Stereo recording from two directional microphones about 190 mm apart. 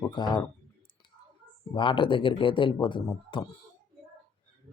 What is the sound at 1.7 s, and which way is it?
Speech, 25° left (ahead or behind).